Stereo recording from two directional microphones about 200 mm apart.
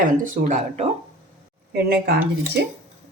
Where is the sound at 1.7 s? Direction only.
50° right (ahead or behind).